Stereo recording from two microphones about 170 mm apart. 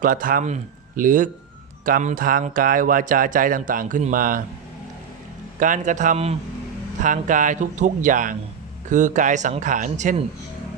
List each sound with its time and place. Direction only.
0.0 s speech: 55° right (ahead or behind)
5.5 s speech: 50° right (ahead or behind)